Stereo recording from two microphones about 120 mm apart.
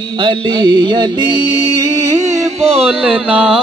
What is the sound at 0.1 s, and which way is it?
Music, 40° right (ahead or behind).